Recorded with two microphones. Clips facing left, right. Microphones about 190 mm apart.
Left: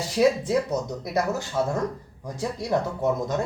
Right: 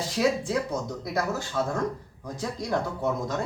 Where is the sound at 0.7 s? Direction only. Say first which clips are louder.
Left 3 dB; 20° left (ahead or behind).